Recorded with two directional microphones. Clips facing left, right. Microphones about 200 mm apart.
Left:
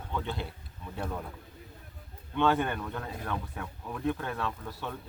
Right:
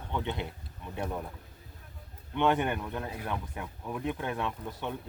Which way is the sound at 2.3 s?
20° right (ahead or behind).